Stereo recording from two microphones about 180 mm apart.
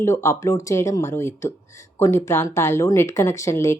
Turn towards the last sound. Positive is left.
turn(degrees=15)  # may be behind; listen again after turning